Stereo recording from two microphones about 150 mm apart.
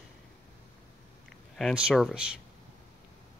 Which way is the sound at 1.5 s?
5° right (ahead or behind).